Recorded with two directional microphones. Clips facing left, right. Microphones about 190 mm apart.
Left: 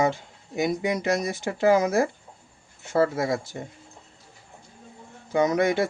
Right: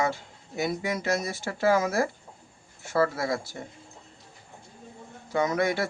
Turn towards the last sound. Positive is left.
turn(degrees=20)  # may be behind; listen again after turning